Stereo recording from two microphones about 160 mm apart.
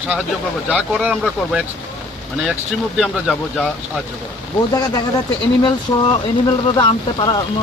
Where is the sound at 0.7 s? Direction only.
5° right (ahead or behind).